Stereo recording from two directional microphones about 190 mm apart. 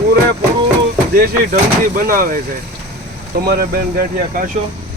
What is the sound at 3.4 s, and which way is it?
Speech, 50° right (ahead or behind).